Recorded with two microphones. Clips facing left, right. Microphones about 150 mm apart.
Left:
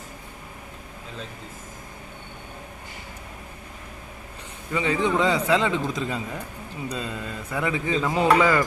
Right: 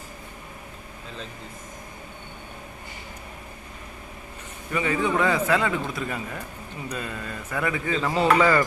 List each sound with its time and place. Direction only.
4.7 s a man's voice: 15° left (ahead or behind)